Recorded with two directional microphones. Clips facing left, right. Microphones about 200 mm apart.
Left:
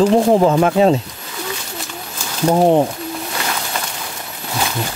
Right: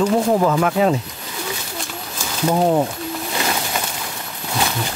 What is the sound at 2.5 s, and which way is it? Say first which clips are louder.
Speech: left 4 dB; 20° left (ahead or behind).